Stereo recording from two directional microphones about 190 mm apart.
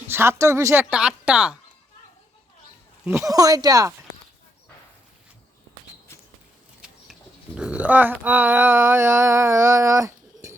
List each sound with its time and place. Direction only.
0.1 s speech: 15° right (ahead or behind)
3.2 s speech: 20° right (ahead or behind)
6.8 s speech: 5° right (ahead or behind)